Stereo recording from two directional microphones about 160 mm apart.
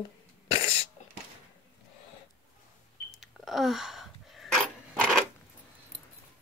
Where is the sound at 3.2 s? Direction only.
Centre (ahead or behind).